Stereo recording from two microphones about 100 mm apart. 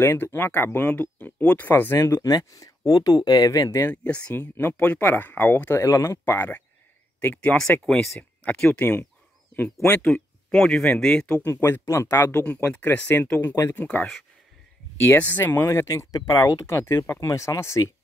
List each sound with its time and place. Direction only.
0.0 s speech: 25° left (ahead or behind)
3.9 s speech: 15° left (ahead or behind)
5.8 s speech: 30° left (ahead or behind)
7.8 s speech: 5° left (ahead or behind)
8.2 s speech: 15° left (ahead or behind)
11.4 s speech: 25° left (ahead or behind)
13.8 s speech: 10° left (ahead or behind); by 16.2 s 30° left (ahead or behind)
16.2 s speech: 40° left (ahead or behind)